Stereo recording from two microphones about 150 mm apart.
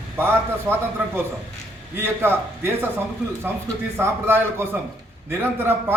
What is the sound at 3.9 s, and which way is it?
A man's voice, 15° right (ahead or behind).